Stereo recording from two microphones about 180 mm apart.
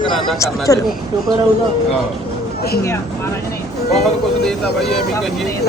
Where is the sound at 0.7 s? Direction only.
20° left (ahead or behind).